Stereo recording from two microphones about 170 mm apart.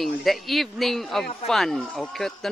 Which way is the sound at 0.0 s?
Centre (ahead or behind).